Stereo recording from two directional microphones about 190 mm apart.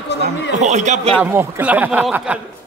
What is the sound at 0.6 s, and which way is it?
Speech, 40° right (ahead or behind).